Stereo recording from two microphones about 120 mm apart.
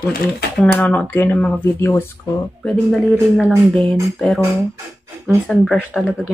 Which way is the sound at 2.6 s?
Centre (ahead or behind).